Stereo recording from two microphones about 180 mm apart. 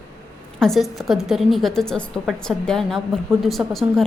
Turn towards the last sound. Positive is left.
turn(degrees=0)  # may be behind; listen again after turning